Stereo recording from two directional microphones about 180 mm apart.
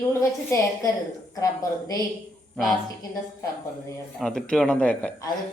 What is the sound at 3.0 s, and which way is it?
Speech, 20° left (ahead or behind).